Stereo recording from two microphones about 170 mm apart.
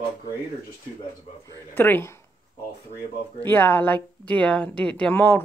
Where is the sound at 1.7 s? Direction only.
10° left (ahead or behind).